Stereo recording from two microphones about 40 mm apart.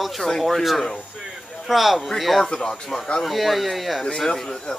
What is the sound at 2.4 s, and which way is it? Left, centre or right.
Speech, centre.